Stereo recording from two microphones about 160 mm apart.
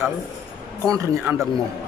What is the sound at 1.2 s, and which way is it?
Speech, centre (ahead or behind).